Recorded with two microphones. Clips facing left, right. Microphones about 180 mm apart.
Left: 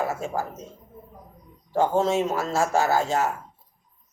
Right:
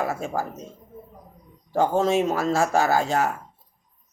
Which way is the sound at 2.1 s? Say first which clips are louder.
Right 2 dB; 15° right (ahead or behind).